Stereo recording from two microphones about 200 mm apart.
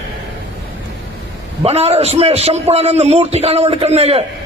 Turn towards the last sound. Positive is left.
turn(degrees=-30)  # may be behind; listen again after turning